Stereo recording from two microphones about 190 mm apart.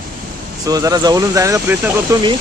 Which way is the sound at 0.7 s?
20° right (ahead or behind).